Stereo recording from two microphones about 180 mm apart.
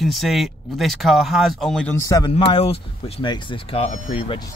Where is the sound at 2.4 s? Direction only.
30° left (ahead or behind).